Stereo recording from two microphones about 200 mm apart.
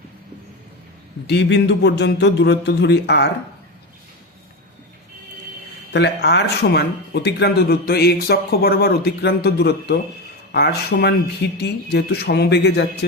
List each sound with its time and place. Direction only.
1.3 s speech: 55° left (ahead or behind)
5.9 s speech: 55° left (ahead or behind)